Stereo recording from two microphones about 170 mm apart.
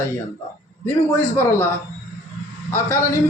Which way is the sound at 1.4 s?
15° left (ahead or behind).